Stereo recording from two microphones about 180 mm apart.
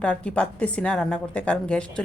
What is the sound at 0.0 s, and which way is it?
A woman's voice, 5° left (ahead or behind).